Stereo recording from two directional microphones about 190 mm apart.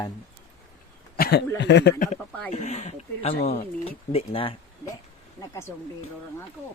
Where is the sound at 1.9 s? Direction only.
45° left (ahead or behind).